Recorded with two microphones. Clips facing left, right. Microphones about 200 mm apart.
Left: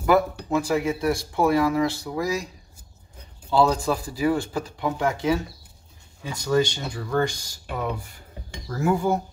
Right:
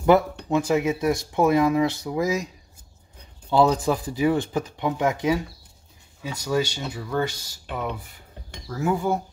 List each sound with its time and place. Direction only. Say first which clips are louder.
0.5 s speech: right 5 dB; 20° right (ahead or behind)
7.7 s cutlery: left 1 dB; centre (ahead or behind)